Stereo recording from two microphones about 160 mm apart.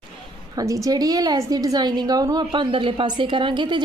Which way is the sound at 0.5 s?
20° right (ahead or behind).